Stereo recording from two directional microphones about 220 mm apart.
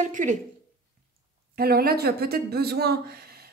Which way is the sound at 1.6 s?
45° right (ahead or behind).